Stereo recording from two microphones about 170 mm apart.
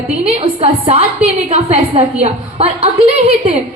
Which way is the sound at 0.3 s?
35° right (ahead or behind).